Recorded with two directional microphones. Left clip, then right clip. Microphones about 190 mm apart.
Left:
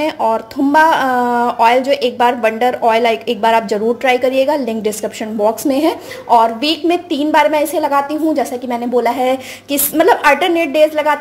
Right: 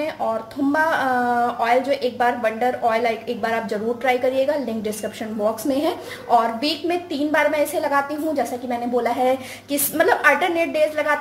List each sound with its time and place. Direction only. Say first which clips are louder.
0.0 s speech: left 8 dB; 40° left (ahead or behind)